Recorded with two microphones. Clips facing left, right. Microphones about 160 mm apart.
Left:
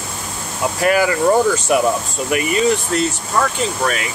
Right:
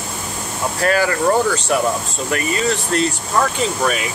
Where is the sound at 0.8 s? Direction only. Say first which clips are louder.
Left 2 dB; 15° left (ahead or behind).